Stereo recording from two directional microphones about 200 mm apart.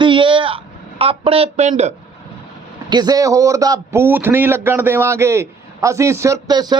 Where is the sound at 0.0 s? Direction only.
25° right (ahead or behind).